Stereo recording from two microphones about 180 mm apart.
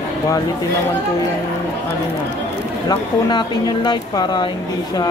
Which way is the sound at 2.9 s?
25° left (ahead or behind).